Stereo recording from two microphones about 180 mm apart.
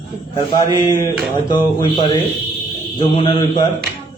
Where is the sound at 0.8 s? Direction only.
20° left (ahead or behind).